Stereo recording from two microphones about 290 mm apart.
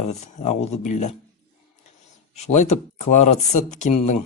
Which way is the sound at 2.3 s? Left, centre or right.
Left.